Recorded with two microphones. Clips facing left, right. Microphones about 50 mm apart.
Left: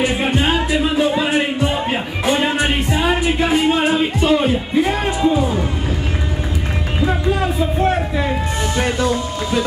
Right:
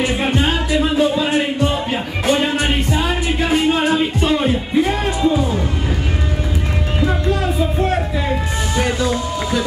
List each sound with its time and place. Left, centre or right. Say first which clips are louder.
0.0 s music: even; centre
2.5 s music: even; centre
7.1 s a sound: left 2 dB; centre
9.0 s music: even; left